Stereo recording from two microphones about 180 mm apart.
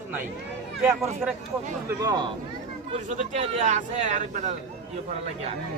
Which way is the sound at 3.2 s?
40° right (ahead or behind).